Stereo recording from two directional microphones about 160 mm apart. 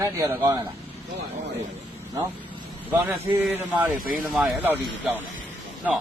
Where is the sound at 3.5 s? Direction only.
10° right (ahead or behind).